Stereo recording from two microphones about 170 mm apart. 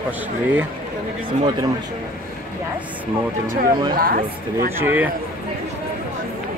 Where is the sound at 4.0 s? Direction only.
60° right (ahead or behind).